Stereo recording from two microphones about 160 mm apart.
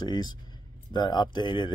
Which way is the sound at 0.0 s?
25° left (ahead or behind).